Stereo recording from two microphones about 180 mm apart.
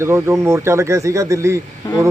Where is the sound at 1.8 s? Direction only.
20° left (ahead or behind).